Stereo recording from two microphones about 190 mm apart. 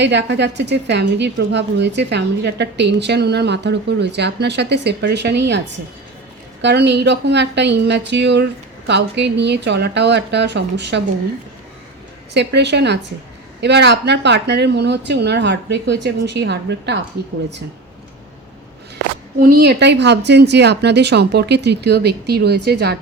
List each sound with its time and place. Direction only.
0.0 s a woman's voice: 65° right (ahead or behind)
12.3 s a woman's voice: 65° right (ahead or behind)
19.4 s a woman's voice: 50° right (ahead or behind)